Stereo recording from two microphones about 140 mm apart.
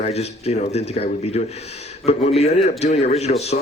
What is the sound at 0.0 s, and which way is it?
Speech, 50° left (ahead or behind).